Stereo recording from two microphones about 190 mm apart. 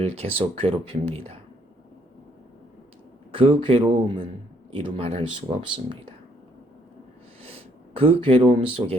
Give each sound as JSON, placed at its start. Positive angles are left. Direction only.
{"t": 0.0, "sound": "speech", "side_deg": -30}
{"t": 3.3, "sound": "speech", "side_deg": -25}
{"t": 7.4, "sound": "speech", "side_deg": -30}